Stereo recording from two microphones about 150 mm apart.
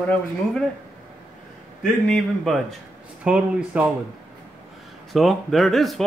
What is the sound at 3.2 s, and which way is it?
Speech, 10° right (ahead or behind).